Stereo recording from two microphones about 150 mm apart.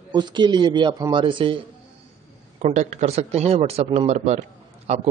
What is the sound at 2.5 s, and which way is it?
Speech, 50° right (ahead or behind).